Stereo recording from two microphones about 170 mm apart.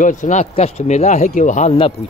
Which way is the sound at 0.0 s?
45° left (ahead or behind).